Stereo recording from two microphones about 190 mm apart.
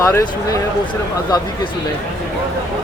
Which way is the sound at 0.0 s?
15° left (ahead or behind).